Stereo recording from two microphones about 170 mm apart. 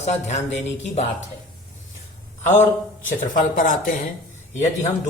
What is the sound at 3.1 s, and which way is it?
Speech, 50° left (ahead or behind).